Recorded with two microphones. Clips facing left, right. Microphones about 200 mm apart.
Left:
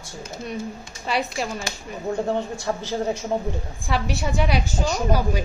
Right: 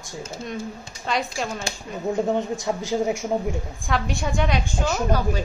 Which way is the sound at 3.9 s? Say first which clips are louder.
Even; 5° left (ahead or behind).